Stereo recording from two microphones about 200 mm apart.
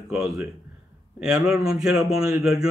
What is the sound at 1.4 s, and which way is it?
A man's voice, centre (ahead or behind).